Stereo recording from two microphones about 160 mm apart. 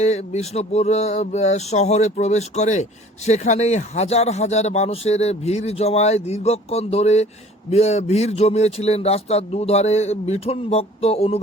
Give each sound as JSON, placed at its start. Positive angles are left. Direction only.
{"t": 0.0, "sound": "speech", "side_deg": 45}